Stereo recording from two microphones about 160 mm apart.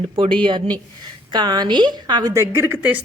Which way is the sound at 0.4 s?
30° right (ahead or behind).